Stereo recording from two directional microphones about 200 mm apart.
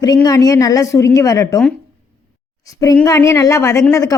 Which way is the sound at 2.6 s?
15° left (ahead or behind).